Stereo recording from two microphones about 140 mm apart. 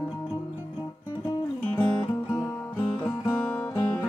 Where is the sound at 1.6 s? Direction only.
15° left (ahead or behind).